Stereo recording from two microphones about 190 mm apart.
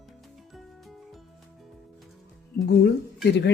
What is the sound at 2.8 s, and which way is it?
Speech, 60° left (ahead or behind).